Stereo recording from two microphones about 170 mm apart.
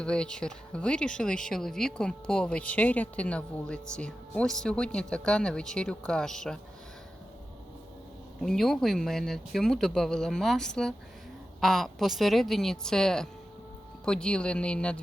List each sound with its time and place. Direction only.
0.0 s speech: 5° left (ahead or behind)
8.4 s speech: centre (ahead or behind)